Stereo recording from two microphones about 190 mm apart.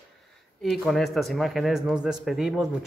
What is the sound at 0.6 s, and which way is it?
Speech, centre (ahead or behind).